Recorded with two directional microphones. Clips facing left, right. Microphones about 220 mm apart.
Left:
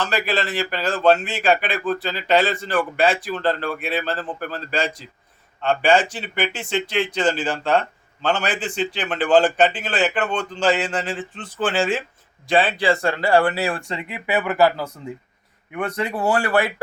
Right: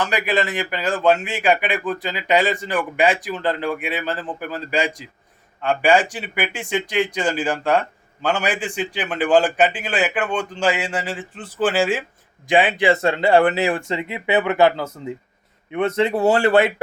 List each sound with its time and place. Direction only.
0.0 s speech: 15° right (ahead or behind)